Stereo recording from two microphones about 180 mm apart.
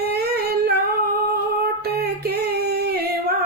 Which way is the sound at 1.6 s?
60° right (ahead or behind).